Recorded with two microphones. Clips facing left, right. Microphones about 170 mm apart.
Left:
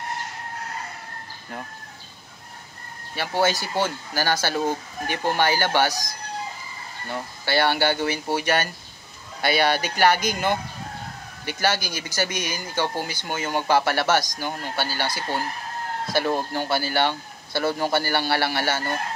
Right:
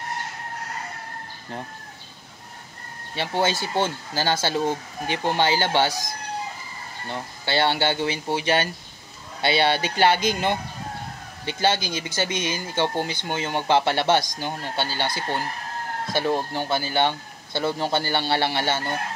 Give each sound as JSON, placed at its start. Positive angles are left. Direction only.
{"t": 3.2, "sound": "speech", "side_deg": -25}
{"t": 16.1, "sound": "speech", "side_deg": -20}